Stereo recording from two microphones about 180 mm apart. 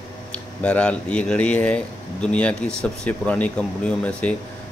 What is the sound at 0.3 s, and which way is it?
Speech, 5° left (ahead or behind).